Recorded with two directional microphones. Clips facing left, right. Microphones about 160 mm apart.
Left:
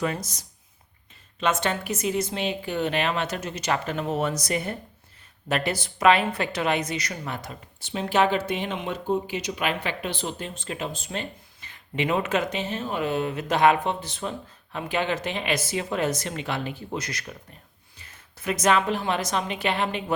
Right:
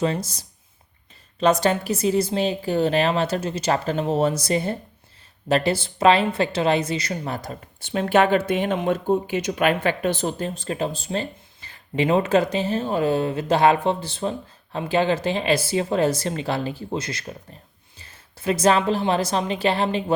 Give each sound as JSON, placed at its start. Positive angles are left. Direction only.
{"t": 0.0, "sound": "a woman's voice", "side_deg": -30}
{"t": 7.8, "sound": "a woman's voice", "side_deg": -55}